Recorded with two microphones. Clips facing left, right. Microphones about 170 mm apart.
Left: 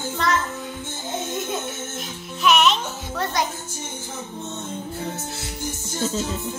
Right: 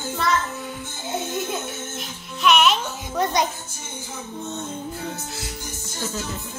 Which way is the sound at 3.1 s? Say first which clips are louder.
Right 3 dB; 20° right (ahead or behind).